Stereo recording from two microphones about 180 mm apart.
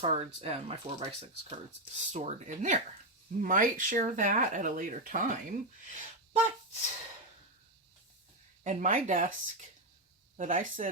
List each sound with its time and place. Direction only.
0.0 s speech: 35° right (ahead or behind)
8.6 s speech: 45° right (ahead or behind)